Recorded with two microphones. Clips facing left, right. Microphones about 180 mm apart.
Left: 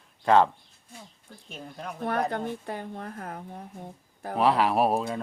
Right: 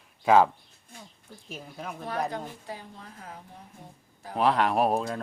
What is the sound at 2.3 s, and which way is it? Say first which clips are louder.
Speech: left 5 dB; 60° left (ahead or behind).